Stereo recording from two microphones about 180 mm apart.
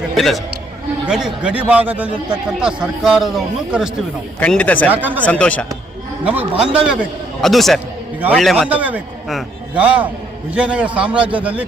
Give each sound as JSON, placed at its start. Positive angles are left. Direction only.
{"t": 0.1, "sound": "a man's voice", "side_deg": 0}
{"t": 4.4, "sound": "speech", "side_deg": 5}
{"t": 4.9, "sound": "a man's voice", "side_deg": -10}
{"t": 5.2, "sound": "speech", "side_deg": 5}
{"t": 6.2, "sound": "a man's voice", "side_deg": -10}